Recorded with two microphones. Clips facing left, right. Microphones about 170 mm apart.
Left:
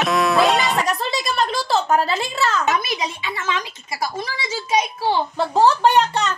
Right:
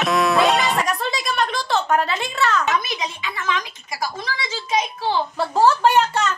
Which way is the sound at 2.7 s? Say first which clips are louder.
Left 1 dB; 10° left (ahead or behind).